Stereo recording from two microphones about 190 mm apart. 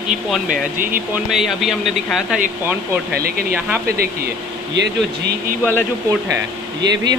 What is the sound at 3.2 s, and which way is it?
Speech, 50° right (ahead or behind).